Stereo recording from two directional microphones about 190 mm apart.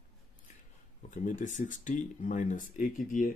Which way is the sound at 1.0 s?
40° left (ahead or behind).